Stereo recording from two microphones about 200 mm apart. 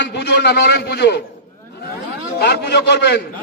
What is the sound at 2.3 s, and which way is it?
Speech, 55° left (ahead or behind).